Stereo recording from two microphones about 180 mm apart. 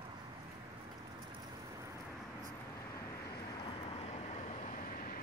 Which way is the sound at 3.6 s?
30° left (ahead or behind).